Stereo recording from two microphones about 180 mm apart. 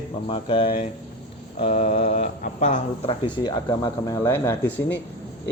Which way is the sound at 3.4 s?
20° left (ahead or behind).